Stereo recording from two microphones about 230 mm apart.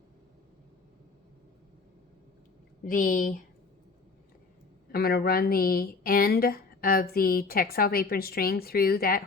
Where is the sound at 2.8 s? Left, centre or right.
Left.